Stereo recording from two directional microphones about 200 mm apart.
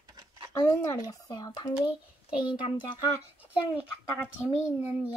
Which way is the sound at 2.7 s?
25° left (ahead or behind).